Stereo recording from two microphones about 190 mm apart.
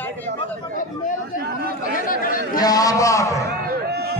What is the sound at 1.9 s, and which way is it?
Speech, 45° left (ahead or behind).